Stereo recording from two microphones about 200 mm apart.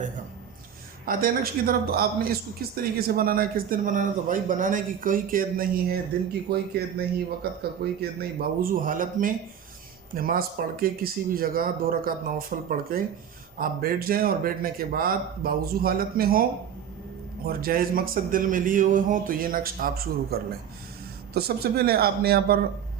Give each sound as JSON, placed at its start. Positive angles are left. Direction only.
{"t": 1.0, "sound": "speech", "side_deg": -45}